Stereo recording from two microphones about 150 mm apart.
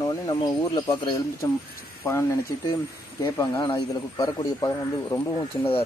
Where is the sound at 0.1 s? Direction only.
25° left (ahead or behind).